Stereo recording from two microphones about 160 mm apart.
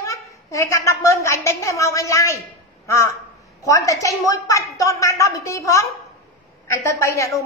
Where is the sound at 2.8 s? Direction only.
15° left (ahead or behind).